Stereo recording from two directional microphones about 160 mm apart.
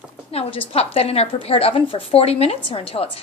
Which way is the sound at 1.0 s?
40° left (ahead or behind).